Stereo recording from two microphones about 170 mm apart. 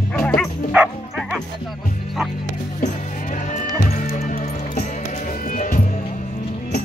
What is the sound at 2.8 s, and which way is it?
Music, 50° left (ahead or behind).